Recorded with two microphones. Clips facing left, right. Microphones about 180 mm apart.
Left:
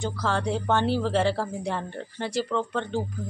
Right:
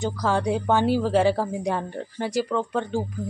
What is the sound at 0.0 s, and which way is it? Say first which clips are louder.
A woman's voice: right 3 dB; 15° right (ahead or behind).